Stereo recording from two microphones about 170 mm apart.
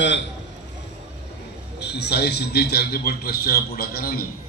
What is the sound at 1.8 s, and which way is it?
A man's voice, 75° left (ahead or behind).